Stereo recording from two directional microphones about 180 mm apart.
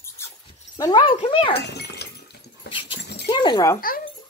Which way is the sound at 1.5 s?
65° left (ahead or behind).